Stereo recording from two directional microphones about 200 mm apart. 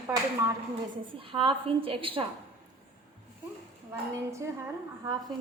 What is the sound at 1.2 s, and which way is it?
A woman's voice, 25° right (ahead or behind).